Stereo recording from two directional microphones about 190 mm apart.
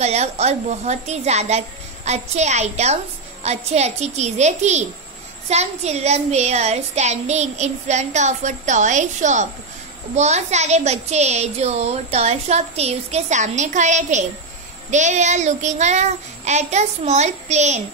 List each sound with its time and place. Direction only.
0.0 s a child's voice: 35° right (ahead or behind)